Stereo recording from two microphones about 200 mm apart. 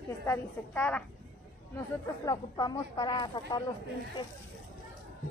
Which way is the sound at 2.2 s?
20° left (ahead or behind).